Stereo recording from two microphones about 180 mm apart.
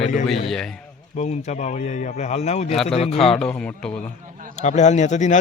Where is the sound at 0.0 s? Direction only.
45° left (ahead or behind).